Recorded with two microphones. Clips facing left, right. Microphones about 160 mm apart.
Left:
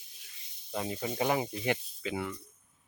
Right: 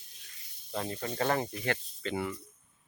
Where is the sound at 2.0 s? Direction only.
Centre (ahead or behind).